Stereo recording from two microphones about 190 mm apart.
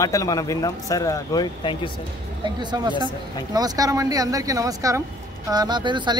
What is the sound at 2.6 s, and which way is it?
Speech, 25° right (ahead or behind).